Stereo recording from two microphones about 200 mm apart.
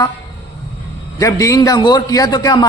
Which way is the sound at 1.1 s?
15° left (ahead or behind).